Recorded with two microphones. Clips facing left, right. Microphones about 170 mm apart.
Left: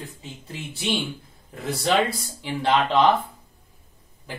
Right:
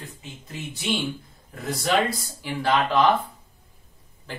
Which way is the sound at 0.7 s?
30° left (ahead or behind).